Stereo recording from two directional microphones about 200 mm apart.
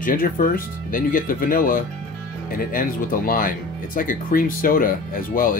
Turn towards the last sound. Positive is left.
turn(degrees=45)  # may be behind; listen again after turning